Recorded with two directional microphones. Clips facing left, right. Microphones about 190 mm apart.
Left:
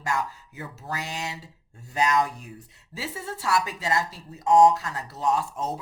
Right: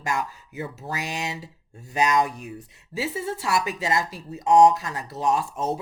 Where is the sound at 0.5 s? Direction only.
15° right (ahead or behind).